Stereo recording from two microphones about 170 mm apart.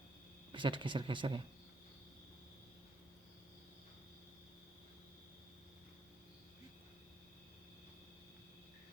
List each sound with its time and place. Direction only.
0.5 s speech: 30° right (ahead or behind)